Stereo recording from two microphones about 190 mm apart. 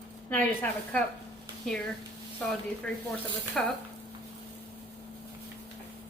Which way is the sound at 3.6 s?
5° left (ahead or behind).